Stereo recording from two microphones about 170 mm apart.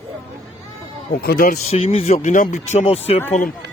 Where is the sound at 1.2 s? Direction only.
55° left (ahead or behind).